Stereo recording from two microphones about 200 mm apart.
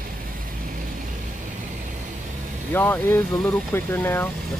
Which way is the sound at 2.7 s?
10° left (ahead or behind).